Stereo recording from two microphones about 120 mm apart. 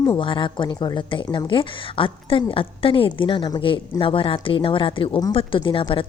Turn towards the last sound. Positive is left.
turn(degrees=45)  # may be behind; listen again after turning